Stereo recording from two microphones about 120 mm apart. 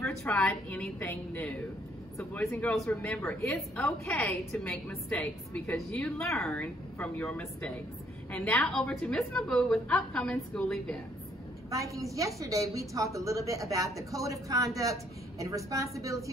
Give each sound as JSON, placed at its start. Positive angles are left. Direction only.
{"t": 0.0, "sound": "a woman's voice", "side_deg": 20}
{"t": 4.5, "sound": "a woman's voice", "side_deg": 5}
{"t": 11.7, "sound": "a woman's voice", "side_deg": -25}